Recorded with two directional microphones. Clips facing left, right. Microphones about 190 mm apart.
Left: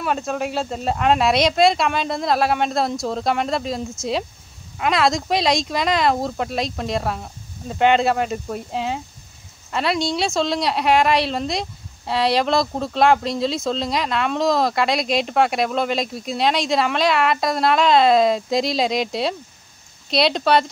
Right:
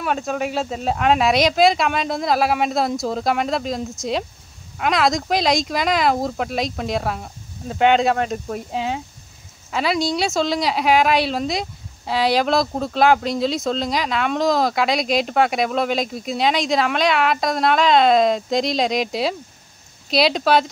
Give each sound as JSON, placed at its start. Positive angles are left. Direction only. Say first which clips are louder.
{"t": 0.0, "sound": "speech", "louder": "even", "side_deg": 0}